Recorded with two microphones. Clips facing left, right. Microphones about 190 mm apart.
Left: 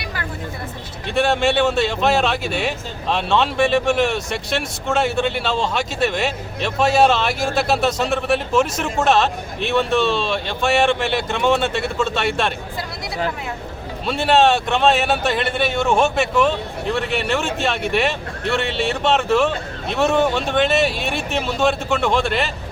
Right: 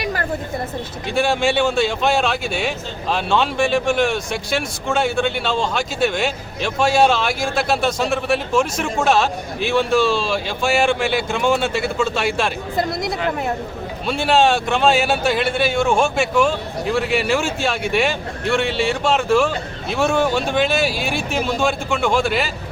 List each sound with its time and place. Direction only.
1.1 s a man's voice: centre (ahead or behind)
12.7 s speech: 50° right (ahead or behind)
14.1 s a man's voice: centre (ahead or behind)